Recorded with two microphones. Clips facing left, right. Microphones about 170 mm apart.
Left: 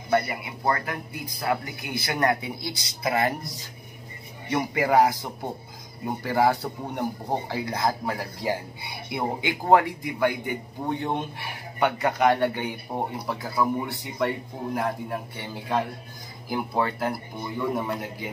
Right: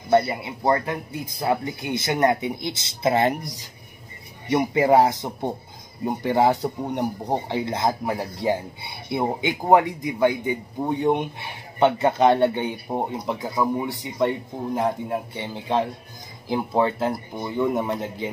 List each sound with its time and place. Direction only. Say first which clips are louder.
0.1 s speech: right 5 dB; 25° right (ahead or behind)
4.5 s speech: right 5 dB; 20° right (ahead or behind)